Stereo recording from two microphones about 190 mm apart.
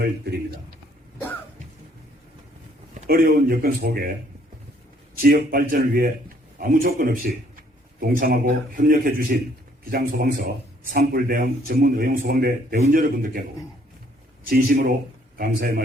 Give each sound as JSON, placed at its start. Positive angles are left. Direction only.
{"t": 3.1, "sound": "speech", "side_deg": -50}
{"t": 5.1, "sound": "a man's voice", "side_deg": -50}
{"t": 14.4, "sound": "speech", "side_deg": -50}